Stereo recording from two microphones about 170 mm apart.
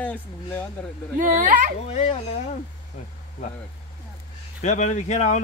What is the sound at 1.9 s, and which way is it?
Speech, 40° left (ahead or behind).